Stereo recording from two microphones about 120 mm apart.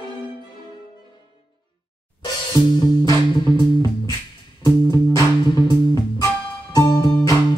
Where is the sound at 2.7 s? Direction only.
30° left (ahead or behind).